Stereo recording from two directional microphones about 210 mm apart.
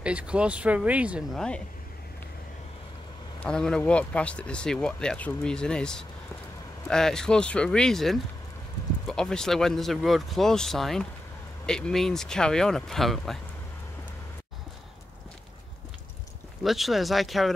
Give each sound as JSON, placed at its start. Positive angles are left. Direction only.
{"t": 0.0, "sound": "speech", "side_deg": -5}
{"t": 3.3, "sound": "speech", "side_deg": 5}
{"t": 16.6, "sound": "speech", "side_deg": 0}